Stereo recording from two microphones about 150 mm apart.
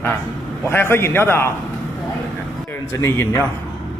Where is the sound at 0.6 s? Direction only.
15° left (ahead or behind).